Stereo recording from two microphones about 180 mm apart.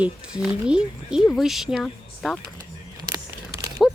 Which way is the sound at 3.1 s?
20° right (ahead or behind).